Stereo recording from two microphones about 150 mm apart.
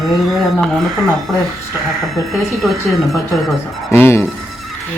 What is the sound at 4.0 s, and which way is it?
Speech, 15° left (ahead or behind).